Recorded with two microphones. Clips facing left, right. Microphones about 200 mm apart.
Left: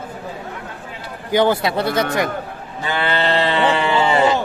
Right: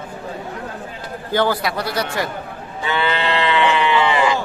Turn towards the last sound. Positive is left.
turn(degrees=35)  # may be behind; listen again after turning